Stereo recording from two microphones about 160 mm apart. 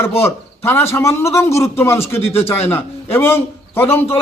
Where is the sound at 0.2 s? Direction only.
15° left (ahead or behind).